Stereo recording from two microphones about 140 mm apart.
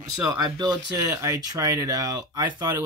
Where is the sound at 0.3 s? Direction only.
30° right (ahead or behind).